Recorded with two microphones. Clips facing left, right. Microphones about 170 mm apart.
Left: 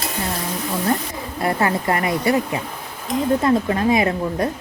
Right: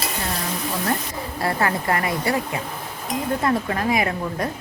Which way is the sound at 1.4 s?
20° left (ahead or behind).